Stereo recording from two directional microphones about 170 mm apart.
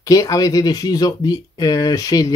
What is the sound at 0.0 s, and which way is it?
Speech, 20° left (ahead or behind).